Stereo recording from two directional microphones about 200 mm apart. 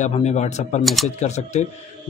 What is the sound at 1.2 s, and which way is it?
Speech, 35° left (ahead or behind).